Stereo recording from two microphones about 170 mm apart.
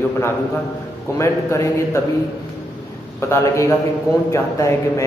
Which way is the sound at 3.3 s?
15° left (ahead or behind).